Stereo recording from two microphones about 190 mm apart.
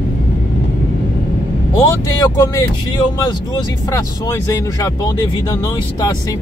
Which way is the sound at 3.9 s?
15° left (ahead or behind).